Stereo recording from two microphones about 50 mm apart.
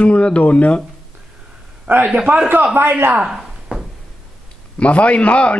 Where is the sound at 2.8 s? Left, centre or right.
Right.